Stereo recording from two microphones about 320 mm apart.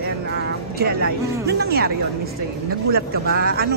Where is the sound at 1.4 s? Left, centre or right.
Right.